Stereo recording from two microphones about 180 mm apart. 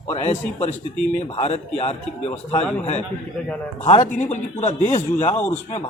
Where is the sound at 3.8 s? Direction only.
40° left (ahead or behind).